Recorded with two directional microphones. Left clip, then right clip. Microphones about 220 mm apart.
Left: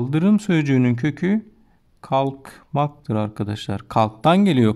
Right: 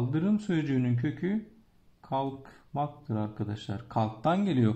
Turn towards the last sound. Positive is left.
turn(degrees=35)  # may be behind; listen again after turning